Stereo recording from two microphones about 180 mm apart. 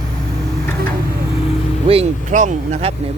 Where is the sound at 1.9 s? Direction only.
40° right (ahead or behind).